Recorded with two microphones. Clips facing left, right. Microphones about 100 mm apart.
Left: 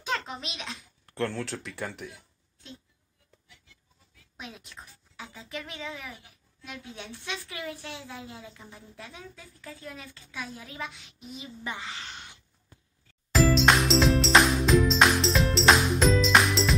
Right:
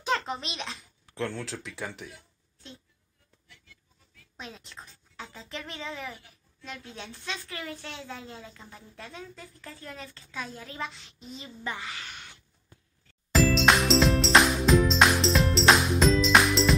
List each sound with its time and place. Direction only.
0.0 s a child's voice: centre (ahead or behind)
4.4 s a woman's voice: 5° left (ahead or behind)
11.6 s a woman's voice: 20° left (ahead or behind)
13.3 s music: centre (ahead or behind)